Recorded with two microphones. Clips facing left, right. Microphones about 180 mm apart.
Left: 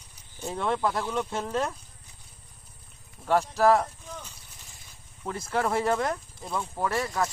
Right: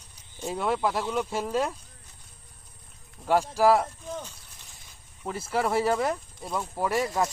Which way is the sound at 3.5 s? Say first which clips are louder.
Even; 10° right (ahead or behind).